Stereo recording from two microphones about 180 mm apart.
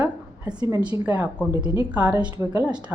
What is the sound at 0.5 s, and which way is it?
Speech, 25° right (ahead or behind).